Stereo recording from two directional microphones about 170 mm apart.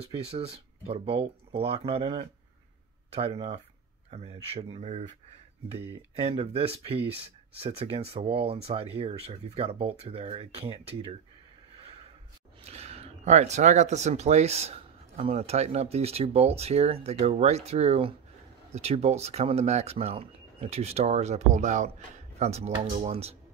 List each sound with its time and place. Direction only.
0.1 s speech: 35° right (ahead or behind)
12.6 s speech: 40° right (ahead or behind)